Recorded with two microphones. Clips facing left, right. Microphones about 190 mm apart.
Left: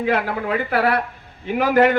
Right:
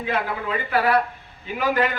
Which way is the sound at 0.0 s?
55° left (ahead or behind).